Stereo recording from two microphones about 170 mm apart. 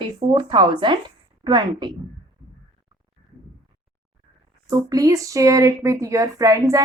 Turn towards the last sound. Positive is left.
turn(degrees=-20)  # may be behind; listen again after turning